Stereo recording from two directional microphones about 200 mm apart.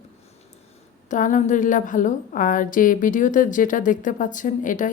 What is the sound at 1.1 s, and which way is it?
A woman's voice, 40° left (ahead or behind).